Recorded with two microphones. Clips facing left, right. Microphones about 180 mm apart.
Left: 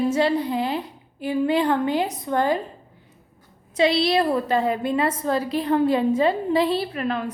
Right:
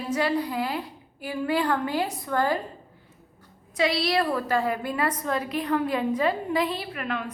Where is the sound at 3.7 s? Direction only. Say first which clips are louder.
Left 5 dB; 25° left (ahead or behind).